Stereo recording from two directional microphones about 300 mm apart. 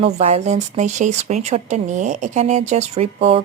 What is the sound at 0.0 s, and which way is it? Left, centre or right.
Speech, right.